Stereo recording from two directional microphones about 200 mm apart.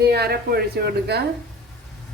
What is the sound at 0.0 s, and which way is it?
Speech, 55° right (ahead or behind).